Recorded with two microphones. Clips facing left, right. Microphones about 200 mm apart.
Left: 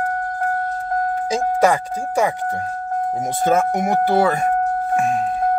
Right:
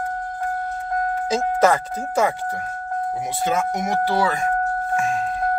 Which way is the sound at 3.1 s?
45° left (ahead or behind).